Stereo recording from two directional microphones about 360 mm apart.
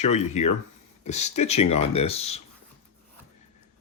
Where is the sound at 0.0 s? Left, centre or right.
Centre.